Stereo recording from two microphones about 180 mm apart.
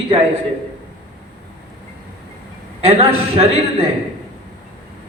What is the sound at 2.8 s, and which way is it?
A man's voice, 35° right (ahead or behind).